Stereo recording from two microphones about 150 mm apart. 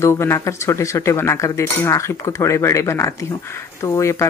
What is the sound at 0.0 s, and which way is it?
Speech, 15° left (ahead or behind).